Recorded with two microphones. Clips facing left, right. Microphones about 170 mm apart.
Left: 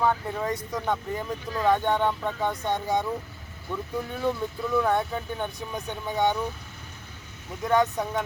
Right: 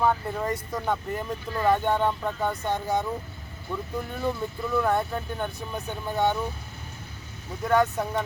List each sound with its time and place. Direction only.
0.0 s speech: centre (ahead or behind)
7.6 s speech: 5° right (ahead or behind)